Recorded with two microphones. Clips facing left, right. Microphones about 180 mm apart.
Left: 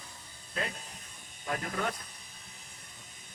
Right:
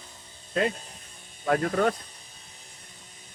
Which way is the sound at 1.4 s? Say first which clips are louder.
Right 10 dB; 60° right (ahead or behind).